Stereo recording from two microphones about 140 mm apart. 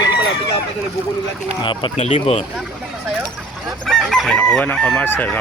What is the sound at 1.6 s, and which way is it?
Speech, 35° left (ahead or behind).